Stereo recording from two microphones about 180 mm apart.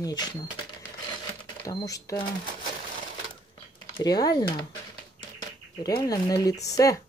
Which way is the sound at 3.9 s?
20° left (ahead or behind).